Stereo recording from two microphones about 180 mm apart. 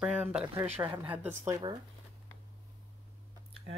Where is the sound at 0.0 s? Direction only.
5° right (ahead or behind).